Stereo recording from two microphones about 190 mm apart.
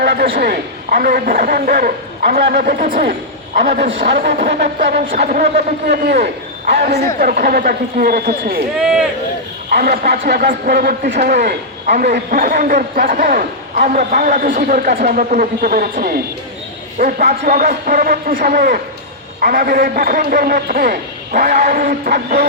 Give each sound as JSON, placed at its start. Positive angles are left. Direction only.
{"t": 0.0, "sound": "a man's voice", "side_deg": -55}
{"t": 3.9, "sound": "speech", "side_deg": -70}
{"t": 4.2, "sound": "a man's voice", "side_deg": -45}
{"t": 5.9, "sound": "a man's voice", "side_deg": -60}
{"t": 7.2, "sound": "a man's voice", "side_deg": -50}
{"t": 8.8, "sound": "speech", "side_deg": -5}
{"t": 9.6, "sound": "a man's voice", "side_deg": -50}